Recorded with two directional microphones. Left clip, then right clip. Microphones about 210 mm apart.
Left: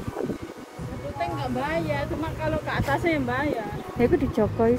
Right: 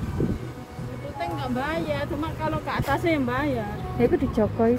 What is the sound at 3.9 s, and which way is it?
Speech, centre (ahead or behind).